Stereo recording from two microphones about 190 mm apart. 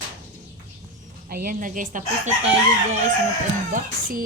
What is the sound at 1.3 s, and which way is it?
Speech, 50° right (ahead or behind).